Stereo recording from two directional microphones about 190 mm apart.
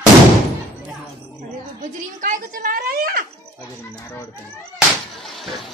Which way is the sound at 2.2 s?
45° right (ahead or behind).